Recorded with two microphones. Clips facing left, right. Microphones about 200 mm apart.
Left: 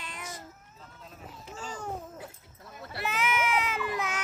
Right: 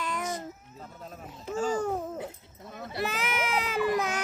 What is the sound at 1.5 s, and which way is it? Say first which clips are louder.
Babbling: right 12 dB; 45° right (ahead or behind).